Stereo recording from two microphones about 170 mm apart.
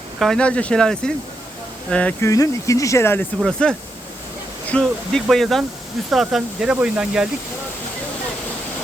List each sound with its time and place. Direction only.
0.2 s speech: 5° left (ahead or behind)
2.3 s speech: 20° left (ahead or behind); by 7.3 s 5° right (ahead or behind)